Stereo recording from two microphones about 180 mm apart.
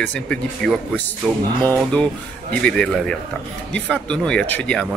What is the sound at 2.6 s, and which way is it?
Speech, 5° left (ahead or behind).